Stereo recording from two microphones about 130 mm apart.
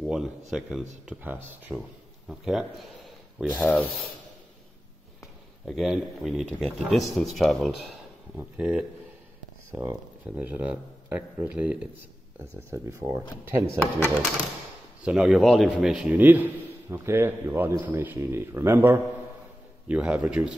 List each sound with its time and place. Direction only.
0.0 s speech: 5° right (ahead or behind)
3.5 s speech: 10° left (ahead or behind)
5.7 s speech: centre (ahead or behind)
8.4 s speech: 10° right (ahead or behind)
10.3 s speech: 10° right (ahead or behind)
12.4 s a man's voice: 20° right (ahead or behind)
15.0 s speech: 5° right (ahead or behind)
16.1 s a man's voice: 15° right (ahead or behind)